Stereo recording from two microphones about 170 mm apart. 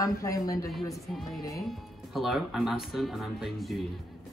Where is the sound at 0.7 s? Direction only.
Centre (ahead or behind).